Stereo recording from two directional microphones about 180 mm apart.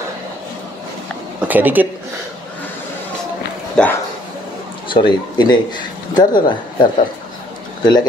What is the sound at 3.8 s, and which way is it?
Speech, 5° left (ahead or behind).